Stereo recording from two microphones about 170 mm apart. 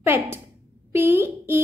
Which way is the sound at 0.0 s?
15° right (ahead or behind).